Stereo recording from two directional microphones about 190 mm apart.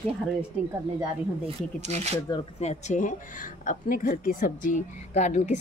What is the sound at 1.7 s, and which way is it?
Speech, 35° right (ahead or behind).